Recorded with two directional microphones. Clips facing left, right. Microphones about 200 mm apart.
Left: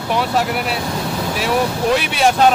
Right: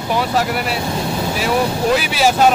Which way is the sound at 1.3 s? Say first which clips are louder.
Even; centre (ahead or behind).